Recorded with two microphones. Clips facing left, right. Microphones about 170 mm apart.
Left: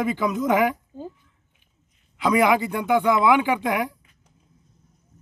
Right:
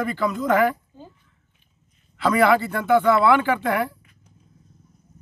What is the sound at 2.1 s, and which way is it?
Speech, 15° left (ahead or behind).